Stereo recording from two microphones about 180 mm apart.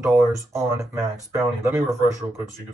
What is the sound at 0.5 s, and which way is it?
Speech, 15° right (ahead or behind).